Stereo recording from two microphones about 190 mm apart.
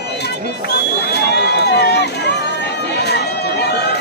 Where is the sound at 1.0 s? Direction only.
60° left (ahead or behind).